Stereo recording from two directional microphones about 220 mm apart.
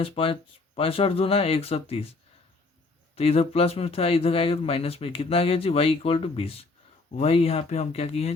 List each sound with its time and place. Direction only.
0.0 s speech: 25° left (ahead or behind)
3.2 s speech: 25° left (ahead or behind)